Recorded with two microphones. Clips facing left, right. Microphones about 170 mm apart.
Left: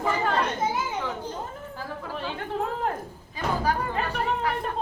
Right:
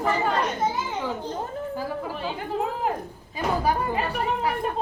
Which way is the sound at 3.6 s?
5° right (ahead or behind).